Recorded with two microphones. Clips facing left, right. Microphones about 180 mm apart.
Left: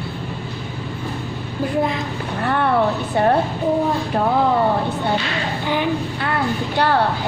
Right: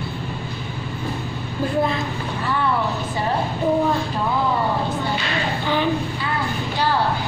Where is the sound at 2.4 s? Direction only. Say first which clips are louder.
Left 5 dB; 60° left (ahead or behind).